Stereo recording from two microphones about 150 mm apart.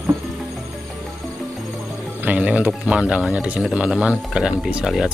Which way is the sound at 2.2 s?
10° right (ahead or behind).